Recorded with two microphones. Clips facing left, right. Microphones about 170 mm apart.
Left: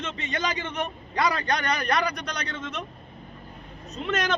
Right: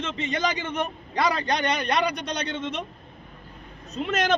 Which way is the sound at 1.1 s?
25° right (ahead or behind).